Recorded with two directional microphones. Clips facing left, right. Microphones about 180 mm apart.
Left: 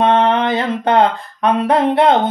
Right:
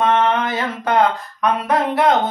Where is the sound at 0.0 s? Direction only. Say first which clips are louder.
Left 3 dB; 30° left (ahead or behind).